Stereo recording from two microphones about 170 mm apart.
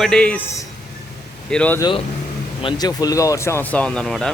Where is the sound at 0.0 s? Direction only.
5° left (ahead or behind).